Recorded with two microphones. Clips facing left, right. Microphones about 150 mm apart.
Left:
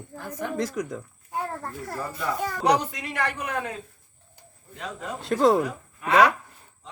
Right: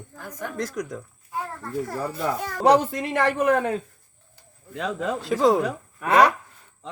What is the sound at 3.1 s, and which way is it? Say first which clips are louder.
Speech: right 8 dB; 50° right (ahead or behind).